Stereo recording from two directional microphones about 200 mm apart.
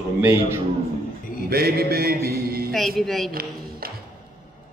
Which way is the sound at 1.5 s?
50° right (ahead or behind).